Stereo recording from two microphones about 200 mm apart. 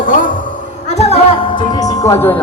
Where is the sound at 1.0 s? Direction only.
30° left (ahead or behind); by 2.4 s 10° left (ahead or behind).